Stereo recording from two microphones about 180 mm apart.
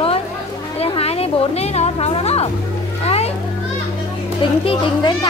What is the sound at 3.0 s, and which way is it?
Boat, 35° left (ahead or behind).